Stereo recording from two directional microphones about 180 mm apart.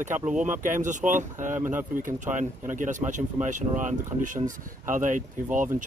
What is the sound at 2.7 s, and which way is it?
Speech, 45° right (ahead or behind).